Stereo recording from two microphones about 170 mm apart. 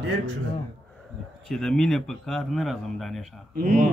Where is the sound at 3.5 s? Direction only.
50° right (ahead or behind).